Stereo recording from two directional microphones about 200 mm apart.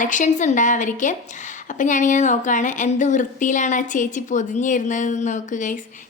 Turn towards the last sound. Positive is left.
turn(degrees=40)  # may be behind; listen again after turning